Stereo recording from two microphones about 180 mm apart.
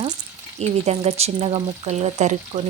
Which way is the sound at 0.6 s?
35° right (ahead or behind).